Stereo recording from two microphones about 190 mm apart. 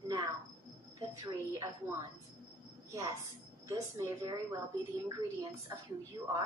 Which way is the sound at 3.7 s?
15° right (ahead or behind).